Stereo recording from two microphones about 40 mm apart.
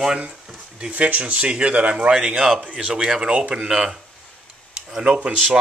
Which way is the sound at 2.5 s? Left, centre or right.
Centre.